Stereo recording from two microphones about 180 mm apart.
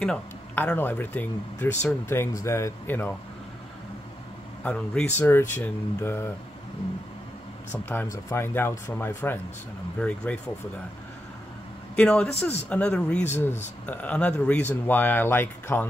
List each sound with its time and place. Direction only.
0.0 s speech: 5° left (ahead or behind)
4.6 s a man's voice: 5° left (ahead or behind)
7.9 s speech: 15° left (ahead or behind)
11.9 s a man's voice: 5° left (ahead or behind)